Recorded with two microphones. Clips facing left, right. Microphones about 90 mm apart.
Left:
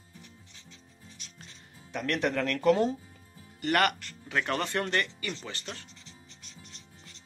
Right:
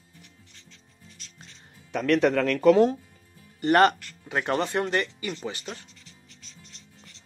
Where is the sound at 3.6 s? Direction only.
30° right (ahead or behind).